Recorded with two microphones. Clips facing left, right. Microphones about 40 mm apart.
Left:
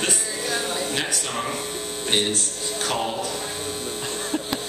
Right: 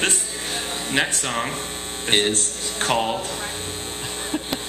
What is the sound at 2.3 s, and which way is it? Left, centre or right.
Speech, right.